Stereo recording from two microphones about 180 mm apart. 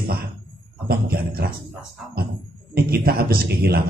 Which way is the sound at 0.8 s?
60° right (ahead or behind).